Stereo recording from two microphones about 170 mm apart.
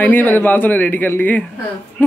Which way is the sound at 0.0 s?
10° left (ahead or behind).